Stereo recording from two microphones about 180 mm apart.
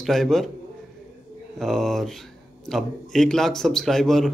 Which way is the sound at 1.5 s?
Centre (ahead or behind).